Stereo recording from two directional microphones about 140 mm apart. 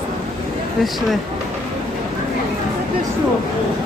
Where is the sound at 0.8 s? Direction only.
Centre (ahead or behind).